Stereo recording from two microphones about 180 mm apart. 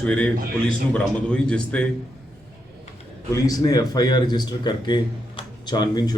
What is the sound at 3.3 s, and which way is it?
Speech, 20° left (ahead or behind).